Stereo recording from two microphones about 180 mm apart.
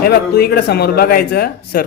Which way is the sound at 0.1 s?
65° left (ahead or behind).